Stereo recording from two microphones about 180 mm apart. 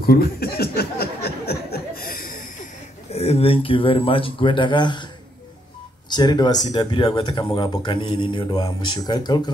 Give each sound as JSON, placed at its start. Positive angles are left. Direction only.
{"t": 0.0, "sound": "chuckle", "side_deg": 60}
{"t": 3.1, "sound": "speech", "side_deg": 35}
{"t": 6.0, "sound": "speech", "side_deg": 25}